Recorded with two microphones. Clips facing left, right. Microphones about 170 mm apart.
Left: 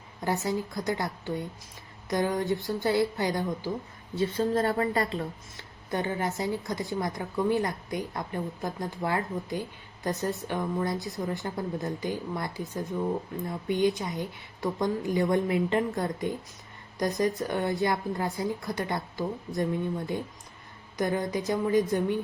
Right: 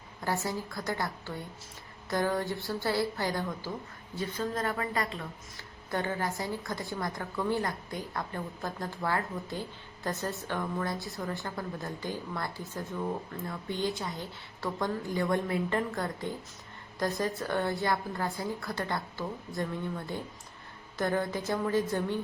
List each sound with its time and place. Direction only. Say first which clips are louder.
0.3 s a woman's voice: left 4 dB; 20° left (ahead or behind)
5.9 s a woman's voice: left 2 dB; 20° left (ahead or behind)
21.0 s a woman's voice: left 2 dB; 15° left (ahead or behind)